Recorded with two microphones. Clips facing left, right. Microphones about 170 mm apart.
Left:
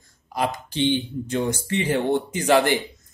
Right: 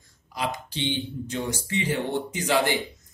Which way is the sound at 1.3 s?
55° left (ahead or behind).